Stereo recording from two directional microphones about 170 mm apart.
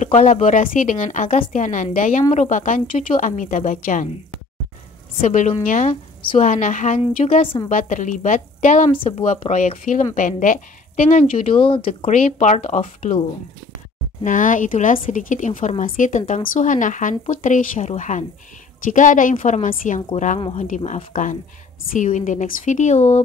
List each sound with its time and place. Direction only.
0.0 s speech: 45° left (ahead or behind)
5.2 s speech: 45° left (ahead or behind)
11.5 s speech: 30° left (ahead or behind)
12.2 s speech: 45° left (ahead or behind)
14.2 s speech: 50° left (ahead or behind)
20.3 s speech: 30° left (ahead or behind)
20.6 s speech: 45° left (ahead or behind)